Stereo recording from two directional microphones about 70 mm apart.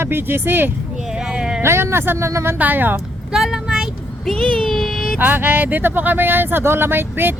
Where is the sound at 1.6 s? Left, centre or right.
Right.